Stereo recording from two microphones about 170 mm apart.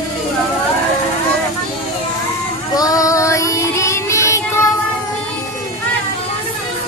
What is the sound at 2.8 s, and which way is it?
Child singing, 20° left (ahead or behind).